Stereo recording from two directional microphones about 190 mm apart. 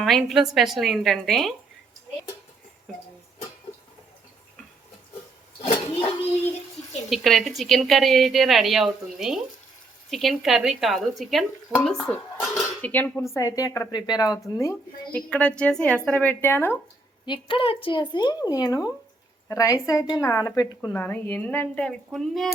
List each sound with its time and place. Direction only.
0.0 s a woman's voice: centre (ahead or behind)
5.6 s a sound: 30° left (ahead or behind)
7.1 s a woman's voice: centre (ahead or behind)
12.0 s dishes: centre (ahead or behind)
12.9 s a woman's voice: 10° left (ahead or behind)
17.2 s a woman's voice: 25° left (ahead or behind); by 22.4 s centre (ahead or behind)